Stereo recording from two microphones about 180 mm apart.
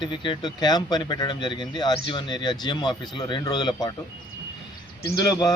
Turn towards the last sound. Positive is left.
turn(degrees=20)  # may be behind; listen again after turning